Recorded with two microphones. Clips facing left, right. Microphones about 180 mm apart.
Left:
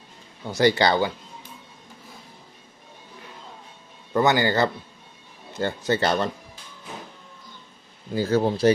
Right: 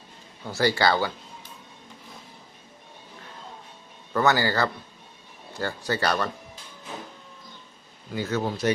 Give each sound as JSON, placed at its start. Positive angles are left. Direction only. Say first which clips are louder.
{"t": 0.4, "sound": "speech", "louder": "left 3 dB", "side_deg": 20}
{"t": 4.1, "sound": "speech", "louder": "left 2 dB", "side_deg": 20}
{"t": 8.1, "sound": "speech", "louder": "left 6 dB", "side_deg": 30}